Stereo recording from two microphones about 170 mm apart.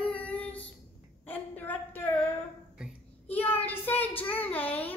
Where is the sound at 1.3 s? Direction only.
10° left (ahead or behind).